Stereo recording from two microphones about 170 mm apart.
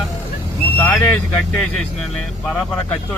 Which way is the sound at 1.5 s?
Centre (ahead or behind).